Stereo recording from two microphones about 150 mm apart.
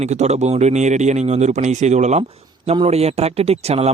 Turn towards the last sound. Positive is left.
turn(degrees=-45)  # may be behind; listen again after turning